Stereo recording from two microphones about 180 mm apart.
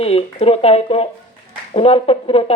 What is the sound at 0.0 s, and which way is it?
Speech, 35° left (ahead or behind).